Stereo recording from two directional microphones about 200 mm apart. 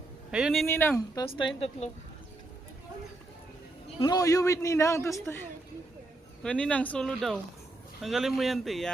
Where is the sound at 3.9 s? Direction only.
20° left (ahead or behind).